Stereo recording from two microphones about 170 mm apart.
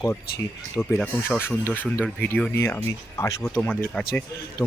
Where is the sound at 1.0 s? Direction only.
10° left (ahead or behind).